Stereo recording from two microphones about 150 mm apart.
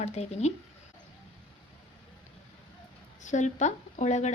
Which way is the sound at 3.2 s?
55° left (ahead or behind).